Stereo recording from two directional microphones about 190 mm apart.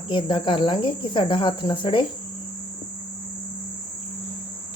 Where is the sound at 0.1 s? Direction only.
25° left (ahead or behind).